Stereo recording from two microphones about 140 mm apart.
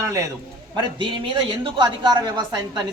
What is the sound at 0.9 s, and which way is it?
A woman's voice, 35° right (ahead or behind).